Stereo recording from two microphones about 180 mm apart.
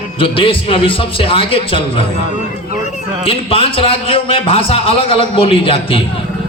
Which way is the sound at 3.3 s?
30° left (ahead or behind).